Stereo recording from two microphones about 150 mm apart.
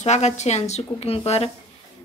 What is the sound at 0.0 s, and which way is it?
A woman's voice, 50° left (ahead or behind).